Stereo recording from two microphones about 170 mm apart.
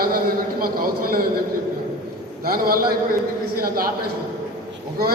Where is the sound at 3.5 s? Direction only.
60° right (ahead or behind).